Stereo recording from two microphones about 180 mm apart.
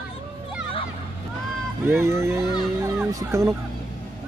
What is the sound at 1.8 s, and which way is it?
Speech, 15° right (ahead or behind).